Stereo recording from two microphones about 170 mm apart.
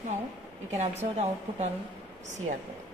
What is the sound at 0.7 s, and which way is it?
A woman's voice, 40° right (ahead or behind).